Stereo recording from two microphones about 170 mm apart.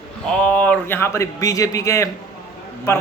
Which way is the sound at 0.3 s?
5° left (ahead or behind).